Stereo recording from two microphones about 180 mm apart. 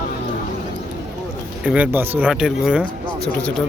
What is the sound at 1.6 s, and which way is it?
Speech, 10° right (ahead or behind).